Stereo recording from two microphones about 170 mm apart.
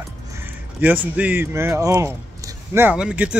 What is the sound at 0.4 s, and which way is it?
Speech, 10° right (ahead or behind).